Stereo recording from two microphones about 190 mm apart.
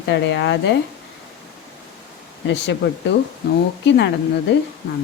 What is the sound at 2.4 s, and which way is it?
Speech, 70° left (ahead or behind).